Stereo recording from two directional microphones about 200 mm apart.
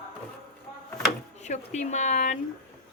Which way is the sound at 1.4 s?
35° left (ahead or behind).